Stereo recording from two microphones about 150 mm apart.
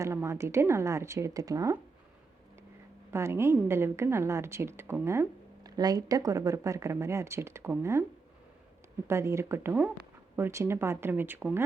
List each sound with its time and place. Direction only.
0.0 s a woman's voice: 20° right (ahead or behind)
3.1 s a woman's voice: 15° right (ahead or behind)
9.0 s a woman's voice: 20° right (ahead or behind)